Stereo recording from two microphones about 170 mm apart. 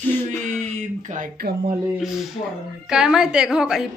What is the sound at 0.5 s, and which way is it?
Speech, 45° right (ahead or behind).